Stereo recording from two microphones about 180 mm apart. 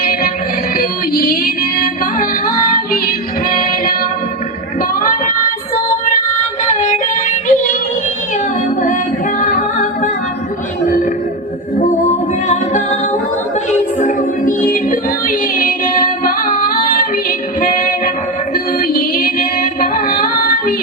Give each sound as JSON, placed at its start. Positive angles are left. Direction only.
{"t": 0.0, "sound": "music", "side_deg": 55}
{"t": 6.7, "sound": "child singing", "side_deg": 40}
{"t": 9.4, "sound": "music", "side_deg": 50}
{"t": 12.5, "sound": "music", "side_deg": 40}